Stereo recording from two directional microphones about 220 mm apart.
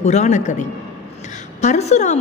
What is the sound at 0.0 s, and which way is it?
A woman's voice, 30° left (ahead or behind).